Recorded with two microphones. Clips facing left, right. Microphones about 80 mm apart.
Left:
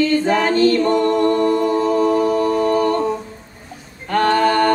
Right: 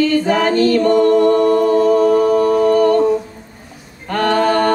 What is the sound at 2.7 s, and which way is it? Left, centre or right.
Music, left.